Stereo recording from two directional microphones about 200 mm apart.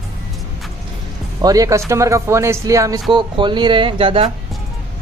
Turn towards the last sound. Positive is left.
turn(degrees=-25)  # may be behind; listen again after turning